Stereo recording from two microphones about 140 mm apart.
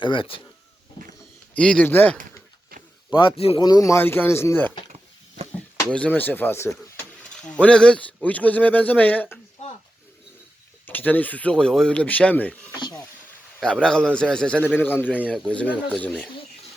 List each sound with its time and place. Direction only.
0.0 s a man's voice: 35° left (ahead or behind)
1.0 s a sound: 35° left (ahead or behind)
1.5 s a man's voice: 5° left (ahead or behind)
3.1 s a man's voice: 35° left (ahead or behind)
3.6 s a man's voice: 25° left (ahead or behind)
10.8 s a man's voice: 15° left (ahead or behind)
13.6 s a man's voice: 5° left (ahead or behind)